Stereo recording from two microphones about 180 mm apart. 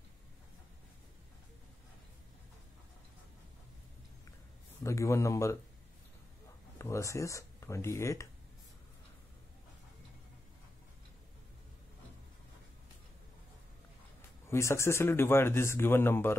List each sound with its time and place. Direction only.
4.8 s speech: 15° left (ahead or behind)
6.8 s speech: 15° left (ahead or behind)
14.5 s speech: 15° left (ahead or behind)